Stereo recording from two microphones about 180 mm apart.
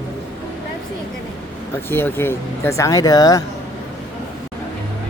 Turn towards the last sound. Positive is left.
turn(degrees=20)  # may be behind; listen again after turning